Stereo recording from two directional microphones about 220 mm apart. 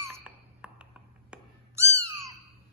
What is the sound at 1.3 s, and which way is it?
Cat, 15° right (ahead or behind).